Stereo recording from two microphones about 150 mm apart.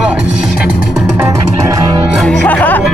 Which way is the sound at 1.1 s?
15° right (ahead or behind).